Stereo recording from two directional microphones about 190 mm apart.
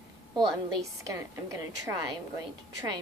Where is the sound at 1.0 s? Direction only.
15° right (ahead or behind).